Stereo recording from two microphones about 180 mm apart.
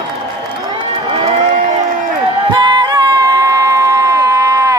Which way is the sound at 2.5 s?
25° right (ahead or behind).